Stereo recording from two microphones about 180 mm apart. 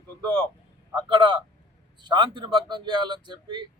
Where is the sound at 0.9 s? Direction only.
25° right (ahead or behind).